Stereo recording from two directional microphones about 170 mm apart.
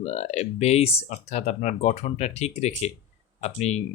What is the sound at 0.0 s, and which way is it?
Speech, 40° left (ahead or behind).